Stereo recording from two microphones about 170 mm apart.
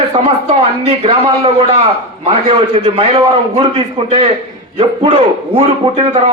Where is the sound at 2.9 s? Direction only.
35° right (ahead or behind).